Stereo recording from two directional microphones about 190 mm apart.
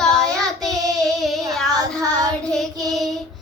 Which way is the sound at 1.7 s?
20° right (ahead or behind).